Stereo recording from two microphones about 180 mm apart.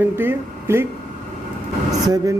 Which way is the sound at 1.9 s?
20° right (ahead or behind).